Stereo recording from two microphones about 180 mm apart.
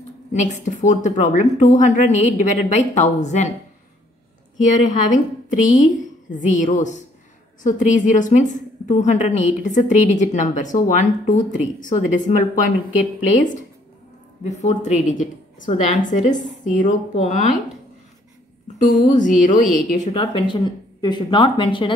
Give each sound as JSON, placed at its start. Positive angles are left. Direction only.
{"t": 0.3, "sound": "a woman's voice", "side_deg": 45}
{"t": 5.1, "sound": "a woman's voice", "side_deg": 45}
{"t": 19.1, "sound": "a woman's voice", "side_deg": 45}